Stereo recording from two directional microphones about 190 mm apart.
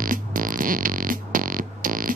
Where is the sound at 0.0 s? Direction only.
45° right (ahead or behind).